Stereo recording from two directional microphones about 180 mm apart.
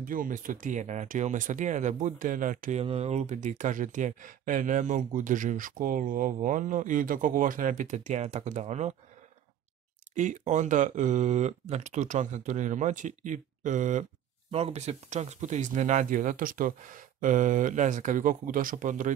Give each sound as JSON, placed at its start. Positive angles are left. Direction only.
{"t": 0.0, "sound": "speech", "side_deg": -50}
{"t": 2.8, "sound": "speech", "side_deg": -35}
{"t": 10.1, "sound": "speech", "side_deg": -40}